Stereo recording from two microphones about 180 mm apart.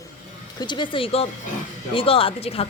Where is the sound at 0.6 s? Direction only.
25° left (ahead or behind).